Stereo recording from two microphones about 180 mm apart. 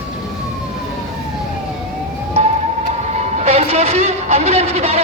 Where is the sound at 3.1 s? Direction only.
40° right (ahead or behind).